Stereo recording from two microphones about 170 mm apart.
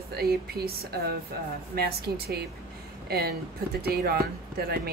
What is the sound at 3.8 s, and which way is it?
Speech, 65° right (ahead or behind).